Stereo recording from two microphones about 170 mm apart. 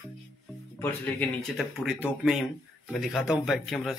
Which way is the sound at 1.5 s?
5° right (ahead or behind).